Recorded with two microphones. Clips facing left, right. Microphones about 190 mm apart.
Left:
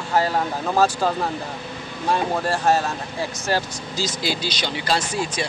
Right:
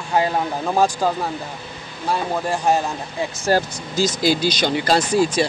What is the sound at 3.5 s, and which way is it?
Speech, 45° right (ahead or behind).